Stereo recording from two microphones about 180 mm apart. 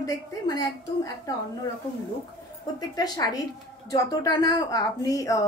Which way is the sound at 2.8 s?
20° left (ahead or behind).